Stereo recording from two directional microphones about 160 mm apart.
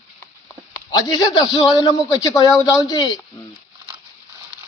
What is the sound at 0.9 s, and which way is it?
Speech, 25° left (ahead or behind).